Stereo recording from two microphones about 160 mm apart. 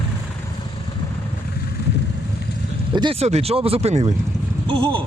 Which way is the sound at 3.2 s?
40° right (ahead or behind).